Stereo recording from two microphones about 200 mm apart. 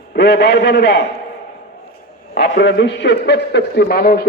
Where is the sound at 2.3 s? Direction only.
55° left (ahead or behind).